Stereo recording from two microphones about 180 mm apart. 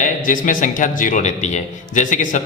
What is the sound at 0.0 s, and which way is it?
A man's voice, 45° left (ahead or behind).